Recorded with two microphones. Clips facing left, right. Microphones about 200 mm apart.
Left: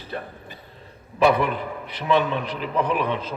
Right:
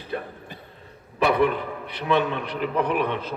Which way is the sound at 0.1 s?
55° right (ahead or behind).